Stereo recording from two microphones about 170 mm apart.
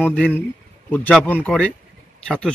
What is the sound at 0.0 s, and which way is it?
Speech, 10° left (ahead or behind).